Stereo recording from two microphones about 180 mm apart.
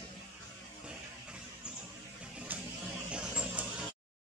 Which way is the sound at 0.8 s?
5° right (ahead or behind).